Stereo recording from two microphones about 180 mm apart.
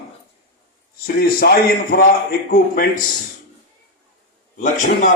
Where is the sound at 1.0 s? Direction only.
60° left (ahead or behind).